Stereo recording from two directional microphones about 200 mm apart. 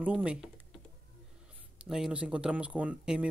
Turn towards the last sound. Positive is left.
turn(degrees=-5)  # may be behind; listen again after turning